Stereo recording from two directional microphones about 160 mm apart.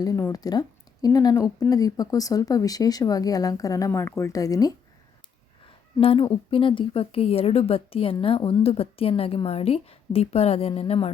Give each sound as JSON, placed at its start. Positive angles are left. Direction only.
{"t": 0.0, "sound": "speech", "side_deg": 20}
{"t": 6.0, "sound": "a woman's voice", "side_deg": 35}